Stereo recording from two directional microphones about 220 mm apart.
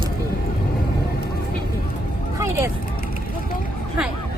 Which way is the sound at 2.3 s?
10° right (ahead or behind).